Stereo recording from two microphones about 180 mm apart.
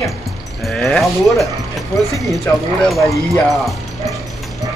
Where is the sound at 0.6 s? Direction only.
Centre (ahead or behind).